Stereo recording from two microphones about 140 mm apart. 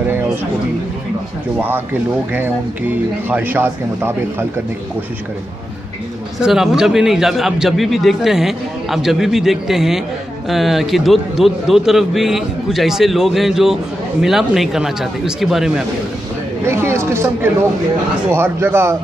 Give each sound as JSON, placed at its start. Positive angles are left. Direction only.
{"t": 3.3, "sound": "a man's voice", "side_deg": -15}
{"t": 6.4, "sound": "a man's voice", "side_deg": -5}
{"t": 16.6, "sound": "a man's voice", "side_deg": -20}